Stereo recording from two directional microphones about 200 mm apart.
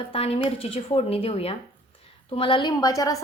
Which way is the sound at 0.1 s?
30° left (ahead or behind).